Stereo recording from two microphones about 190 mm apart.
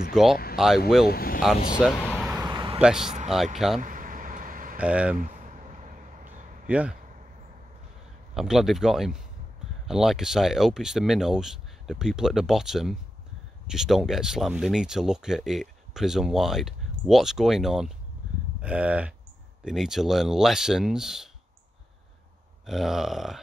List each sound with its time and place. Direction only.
0.1 s speech: centre (ahead or behind)
1.0 s speech: 50° left (ahead or behind)
2.0 s vehicle: 5° left (ahead or behind)
2.3 s vehicle: 20° right (ahead or behind)
2.8 s speech: 5° right (ahead or behind)
3.8 s vehicle: 45° right (ahead or behind)
4.7 s livestock: 5° right (ahead or behind)
5.1 s a sound: 45° right (ahead or behind)
6.7 s livestock: 5° right (ahead or behind)
8.4 s speech: centre (ahead or behind)
18.6 s livestock: 5° right (ahead or behind)
19.6 s speech: centre (ahead or behind)
22.7 s speech: centre (ahead or behind)